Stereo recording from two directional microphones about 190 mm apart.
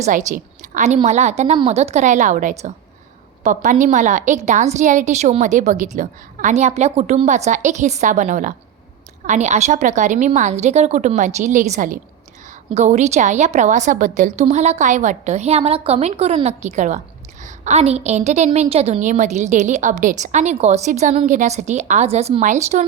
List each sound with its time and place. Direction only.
0.0 s a woman's voice: 40° right (ahead or behind)